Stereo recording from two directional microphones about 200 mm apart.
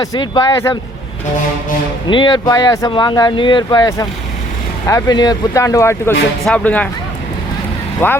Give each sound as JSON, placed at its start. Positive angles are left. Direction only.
{"t": 0.0, "sound": "speech", "side_deg": 20}
{"t": 2.0, "sound": "speech", "side_deg": 25}
{"t": 8.0, "sound": "speech", "side_deg": 10}